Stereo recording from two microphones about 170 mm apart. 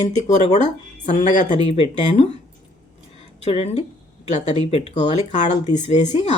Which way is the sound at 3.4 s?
35° left (ahead or behind).